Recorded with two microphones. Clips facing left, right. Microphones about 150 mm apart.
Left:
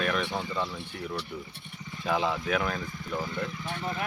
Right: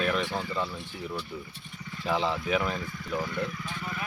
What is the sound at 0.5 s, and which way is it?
Speech, 5° right (ahead or behind).